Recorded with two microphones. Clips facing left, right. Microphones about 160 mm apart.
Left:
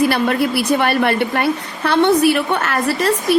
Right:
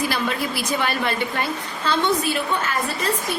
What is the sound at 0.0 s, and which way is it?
A woman's voice, 60° left (ahead or behind).